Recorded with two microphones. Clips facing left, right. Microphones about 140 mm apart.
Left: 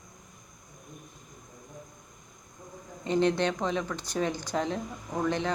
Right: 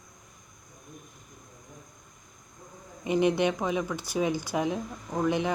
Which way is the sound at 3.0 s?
10° right (ahead or behind).